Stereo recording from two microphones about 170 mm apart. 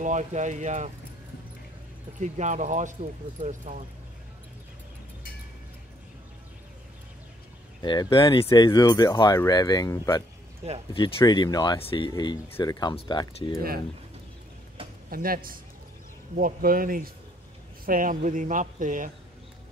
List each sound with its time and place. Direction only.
0.0 s speech: 45° right (ahead or behind)
2.1 s speech: 45° right (ahead or behind)
7.8 s speech: 25° left (ahead or behind)
15.0 s speech: 55° right (ahead or behind)